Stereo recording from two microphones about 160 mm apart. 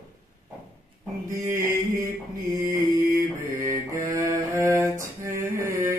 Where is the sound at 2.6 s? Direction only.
65° right (ahead or behind).